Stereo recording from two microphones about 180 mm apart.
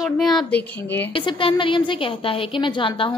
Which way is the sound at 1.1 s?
30° left (ahead or behind).